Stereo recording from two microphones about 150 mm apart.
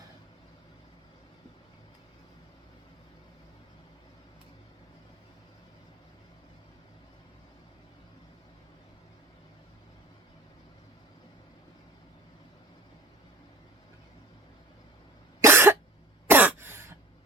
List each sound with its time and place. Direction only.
15.4 s cough: 15° right (ahead or behind)